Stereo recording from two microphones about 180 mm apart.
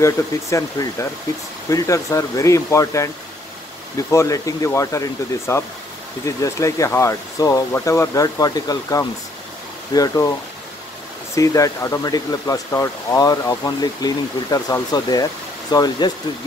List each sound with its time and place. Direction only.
0.0 s speech: 15° left (ahead or behind)
4.1 s speech: 15° left (ahead or behind)
11.3 s speech: 20° left (ahead or behind)